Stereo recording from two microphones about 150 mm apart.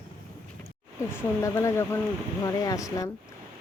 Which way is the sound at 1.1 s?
20° left (ahead or behind).